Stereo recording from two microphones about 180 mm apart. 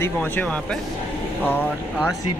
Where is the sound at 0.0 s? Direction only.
10° left (ahead or behind).